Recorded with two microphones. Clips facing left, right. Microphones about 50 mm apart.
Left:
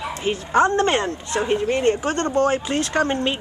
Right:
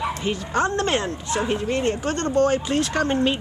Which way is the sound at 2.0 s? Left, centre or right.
Left.